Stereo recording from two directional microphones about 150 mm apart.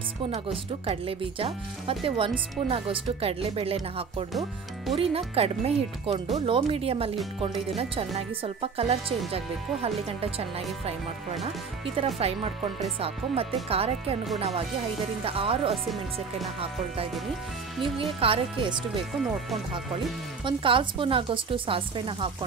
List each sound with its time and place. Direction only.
0.3 s speech: 40° right (ahead or behind)
11.4 s speech: 40° right (ahead or behind)
15.2 s speech: 40° right (ahead or behind)
17.8 s speech: 35° right (ahead or behind)
20.4 s speech: 35° right (ahead or behind)